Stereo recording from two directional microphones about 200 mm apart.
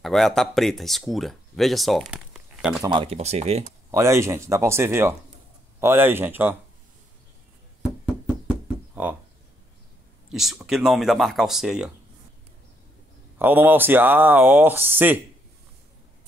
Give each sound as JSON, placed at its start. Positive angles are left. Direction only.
{"t": 0.0, "sound": "speech", "side_deg": 0}
{"t": 2.8, "sound": "speech", "side_deg": -25}
{"t": 3.9, "sound": "speech", "side_deg": -15}
{"t": 8.0, "sound": "knock", "side_deg": 0}
{"t": 10.3, "sound": "speech", "side_deg": 0}
{"t": 13.4, "sound": "speech", "side_deg": -10}